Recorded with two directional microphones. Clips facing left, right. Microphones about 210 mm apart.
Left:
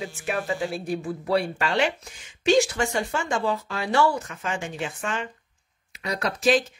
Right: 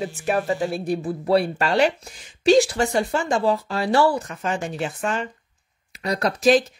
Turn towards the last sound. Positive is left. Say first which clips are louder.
# right 4 dB
turn(degrees=-40)  # may be behind; listen again after turning